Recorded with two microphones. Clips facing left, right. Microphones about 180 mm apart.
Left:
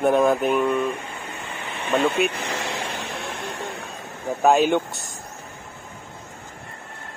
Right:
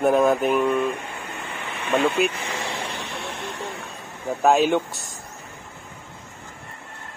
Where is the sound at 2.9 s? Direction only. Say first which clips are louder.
Left 1 dB; 45° left (ahead or behind).